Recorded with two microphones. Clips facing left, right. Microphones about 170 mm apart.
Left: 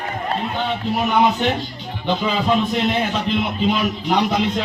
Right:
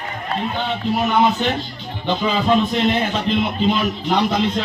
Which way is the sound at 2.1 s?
5° left (ahead or behind).